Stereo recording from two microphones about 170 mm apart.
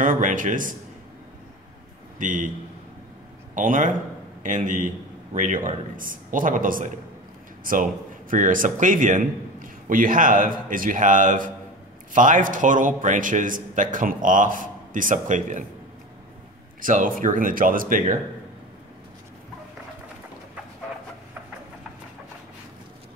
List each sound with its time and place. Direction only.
0.0 s a man's voice: 50° right (ahead or behind)
2.1 s a man's voice: 50° right (ahead or behind)
3.5 s a man's voice: 50° right (ahead or behind)
16.8 s a man's voice: 50° right (ahead or behind)